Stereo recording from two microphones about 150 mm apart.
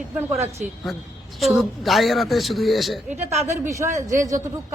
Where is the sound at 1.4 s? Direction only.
Centre (ahead or behind).